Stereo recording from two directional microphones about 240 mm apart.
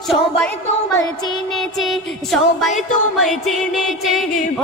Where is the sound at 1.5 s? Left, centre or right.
Centre.